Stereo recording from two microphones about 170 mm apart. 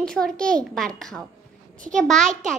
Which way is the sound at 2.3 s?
50° right (ahead or behind).